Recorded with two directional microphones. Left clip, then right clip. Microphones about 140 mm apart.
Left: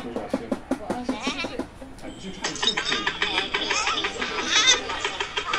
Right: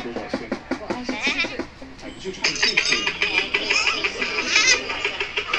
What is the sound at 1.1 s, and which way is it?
Goat, 20° left (ahead or behind).